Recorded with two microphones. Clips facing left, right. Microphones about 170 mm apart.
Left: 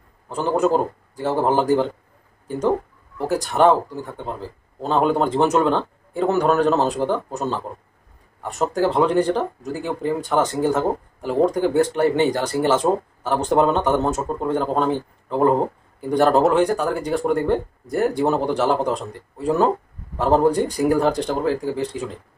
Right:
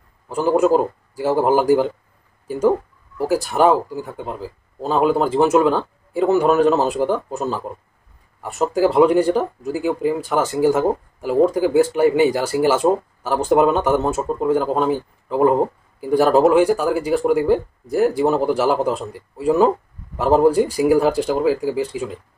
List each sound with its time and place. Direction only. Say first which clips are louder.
0.3 s speech: right 3 dB; 10° right (ahead or behind)
3.2 s speech: right 1 dB; 5° right (ahead or behind)